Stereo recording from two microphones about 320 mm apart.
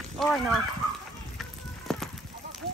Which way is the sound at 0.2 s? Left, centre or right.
Centre.